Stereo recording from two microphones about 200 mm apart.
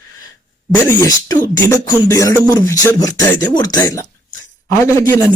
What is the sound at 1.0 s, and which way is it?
Speech, 20° left (ahead or behind).